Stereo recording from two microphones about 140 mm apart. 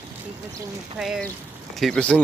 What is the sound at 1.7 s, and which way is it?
Speech, 5° left (ahead or behind).